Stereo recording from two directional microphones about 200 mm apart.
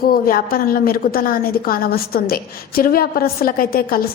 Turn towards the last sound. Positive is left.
turn(degrees=45)  # may be behind; listen again after turning